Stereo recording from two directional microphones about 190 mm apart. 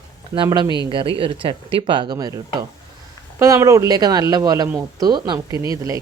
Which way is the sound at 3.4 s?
15° right (ahead or behind).